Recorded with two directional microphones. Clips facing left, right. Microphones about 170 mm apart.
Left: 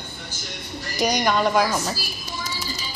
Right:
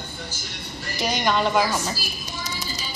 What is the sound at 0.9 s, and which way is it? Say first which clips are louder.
Speech: left 4 dB; 40° left (ahead or behind).